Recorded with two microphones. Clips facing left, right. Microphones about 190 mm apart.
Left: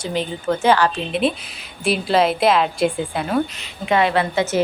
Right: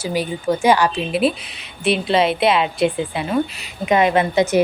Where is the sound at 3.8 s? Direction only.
20° right (ahead or behind).